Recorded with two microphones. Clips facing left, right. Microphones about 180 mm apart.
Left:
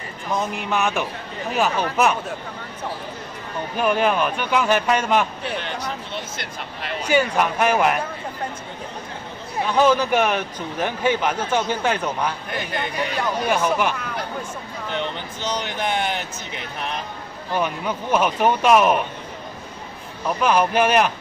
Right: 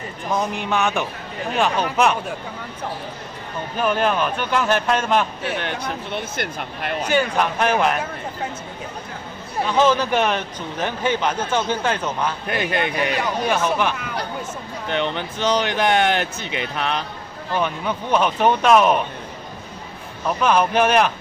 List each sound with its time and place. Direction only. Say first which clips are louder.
0.4 s speech: right 1 dB; centre (ahead or behind)
3.7 s speech: left 1 dB; 10° left (ahead or behind)
5.4 s speech: right 2 dB; 60° right (ahead or behind)
7.1 s speech: left 2 dB; 10° left (ahead or behind)
9.8 s speech: even; 10° left (ahead or behind)
12.4 s speech: right 5 dB; 70° right (ahead or behind)
13.5 s speech: even; 10° left (ahead or behind)
14.9 s speech: right 5 dB; 70° right (ahead or behind)
17.6 s speech: right 1 dB; 10° left (ahead or behind)
20.4 s speech: right 1 dB; 10° left (ahead or behind)